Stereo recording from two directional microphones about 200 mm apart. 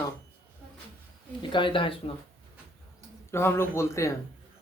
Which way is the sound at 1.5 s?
25° left (ahead or behind).